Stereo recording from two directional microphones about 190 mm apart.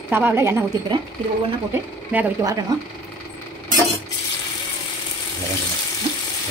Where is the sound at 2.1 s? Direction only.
15° right (ahead or behind).